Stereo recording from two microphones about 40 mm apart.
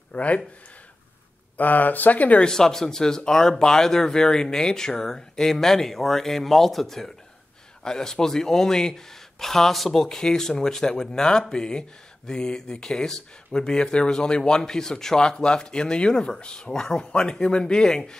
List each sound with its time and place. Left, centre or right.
0.1 s speech: left
1.6 s speech: left
2.4 s speech: centre